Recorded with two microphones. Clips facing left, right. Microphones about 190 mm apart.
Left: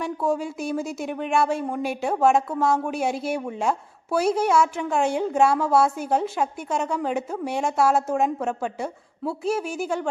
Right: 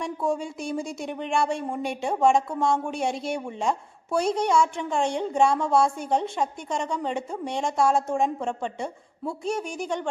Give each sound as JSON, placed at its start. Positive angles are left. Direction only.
{"t": 0.0, "sound": "speech", "side_deg": 0}